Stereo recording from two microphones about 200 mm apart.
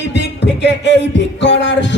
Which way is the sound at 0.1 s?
60° left (ahead or behind).